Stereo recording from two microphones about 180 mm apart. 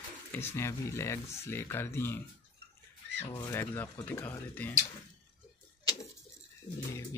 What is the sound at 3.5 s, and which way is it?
Speech, 10° left (ahead or behind).